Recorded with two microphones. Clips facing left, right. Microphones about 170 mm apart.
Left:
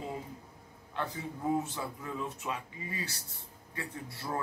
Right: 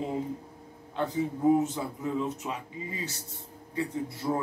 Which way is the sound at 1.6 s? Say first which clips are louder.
Right 7 dB; 20° right (ahead or behind).